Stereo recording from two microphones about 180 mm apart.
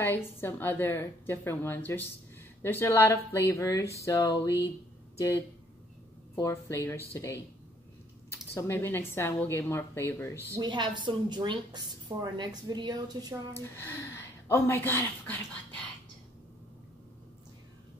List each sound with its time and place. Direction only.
0.0 s a woman's voice: 10° left (ahead or behind)
4.0 s a sound: 20° left (ahead or behind)
6.3 s a woman's voice: 15° left (ahead or behind)
8.5 s a woman's voice: 15° left (ahead or behind)
10.5 s speech: 25° right (ahead or behind)
13.5 s a woman's voice: 15° left (ahead or behind)